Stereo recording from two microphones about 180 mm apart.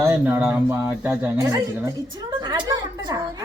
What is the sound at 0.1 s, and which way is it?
A man's voice, 10° right (ahead or behind).